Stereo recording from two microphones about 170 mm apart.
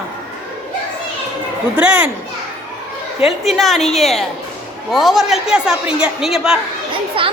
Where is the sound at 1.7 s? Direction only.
10° right (ahead or behind).